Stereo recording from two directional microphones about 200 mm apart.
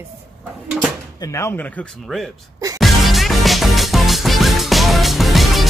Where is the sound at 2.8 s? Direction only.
Centre (ahead or behind).